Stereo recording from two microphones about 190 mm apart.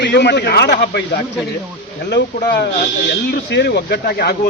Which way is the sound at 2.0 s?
65° left (ahead or behind).